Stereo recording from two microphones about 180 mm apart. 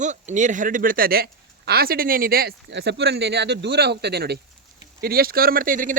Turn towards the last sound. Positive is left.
turn(degrees=-50)  # may be behind; listen again after turning